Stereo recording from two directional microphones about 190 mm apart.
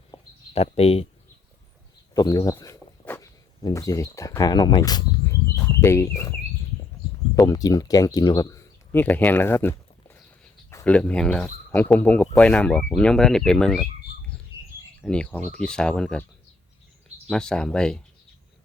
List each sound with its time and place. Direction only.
0.1 s a sound: 30° left (ahead or behind)
2.1 s speech: 20° left (ahead or behind)
7.3 s speech: 20° left (ahead or behind); by 13.8 s 5° left (ahead or behind)
15.0 s speech: 5° left (ahead or behind)
17.2 s speech: 5° left (ahead or behind)